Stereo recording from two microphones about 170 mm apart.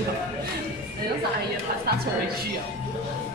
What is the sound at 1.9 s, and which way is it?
Speech, 70° right (ahead or behind).